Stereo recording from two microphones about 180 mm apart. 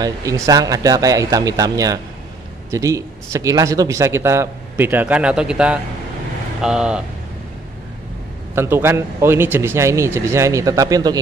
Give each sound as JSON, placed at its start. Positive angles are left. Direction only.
{"t": 0.0, "sound": "speech", "side_deg": -20}
{"t": 8.5, "sound": "speech", "side_deg": -15}